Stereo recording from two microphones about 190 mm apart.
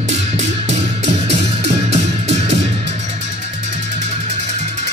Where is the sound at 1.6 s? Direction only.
35° right (ahead or behind).